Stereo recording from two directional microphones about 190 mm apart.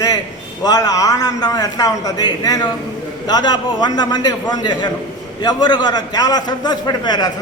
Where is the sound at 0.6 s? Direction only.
20° left (ahead or behind).